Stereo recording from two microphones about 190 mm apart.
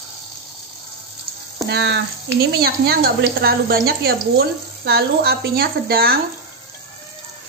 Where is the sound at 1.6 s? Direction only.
65° right (ahead or behind).